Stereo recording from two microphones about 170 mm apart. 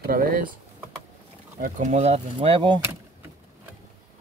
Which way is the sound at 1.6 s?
45° right (ahead or behind).